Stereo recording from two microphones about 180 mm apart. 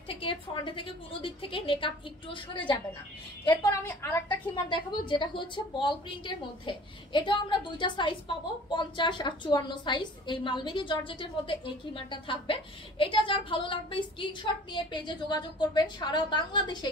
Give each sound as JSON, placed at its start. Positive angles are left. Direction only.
{"t": 0.1, "sound": "a woman's voice", "side_deg": 30}
{"t": 3.4, "sound": "a woman's voice", "side_deg": 20}